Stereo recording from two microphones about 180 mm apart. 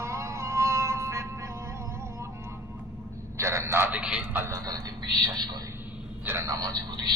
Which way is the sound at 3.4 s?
15° right (ahead or behind).